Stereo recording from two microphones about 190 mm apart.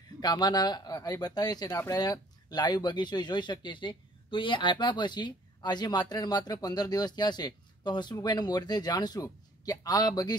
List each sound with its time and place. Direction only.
0.2 s speech: 20° left (ahead or behind)